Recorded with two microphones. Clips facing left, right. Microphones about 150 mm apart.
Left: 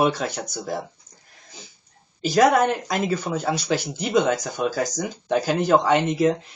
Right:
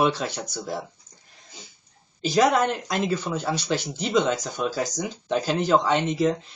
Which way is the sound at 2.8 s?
10° left (ahead or behind).